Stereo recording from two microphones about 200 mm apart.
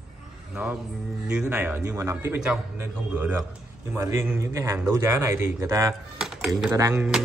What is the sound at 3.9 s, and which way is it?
Speech, 15° right (ahead or behind).